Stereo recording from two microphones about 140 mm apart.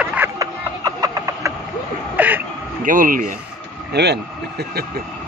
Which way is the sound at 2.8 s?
75° right (ahead or behind).